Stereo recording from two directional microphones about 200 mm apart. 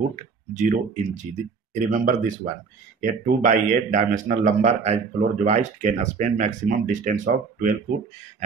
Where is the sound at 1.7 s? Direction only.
40° right (ahead or behind).